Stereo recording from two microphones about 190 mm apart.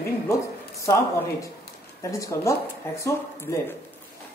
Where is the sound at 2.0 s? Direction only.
15° left (ahead or behind).